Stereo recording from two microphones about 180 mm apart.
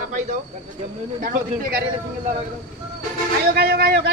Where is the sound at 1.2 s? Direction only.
50° right (ahead or behind).